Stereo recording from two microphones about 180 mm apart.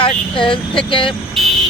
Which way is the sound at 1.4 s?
Centre (ahead or behind).